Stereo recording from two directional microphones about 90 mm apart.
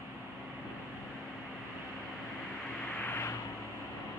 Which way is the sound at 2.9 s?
25° left (ahead or behind).